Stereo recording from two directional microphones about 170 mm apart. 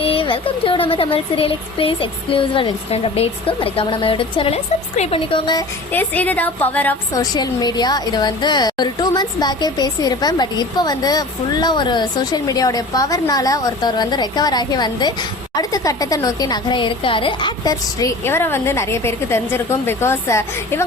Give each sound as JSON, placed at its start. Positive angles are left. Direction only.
{"t": 0.0, "sound": "speech", "side_deg": 30}
{"t": 5.9, "sound": "a woman's voice", "side_deg": 10}
{"t": 7.2, "sound": "a woman's voice", "side_deg": 25}